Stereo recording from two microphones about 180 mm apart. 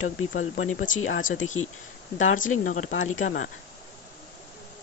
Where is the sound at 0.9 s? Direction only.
90° left.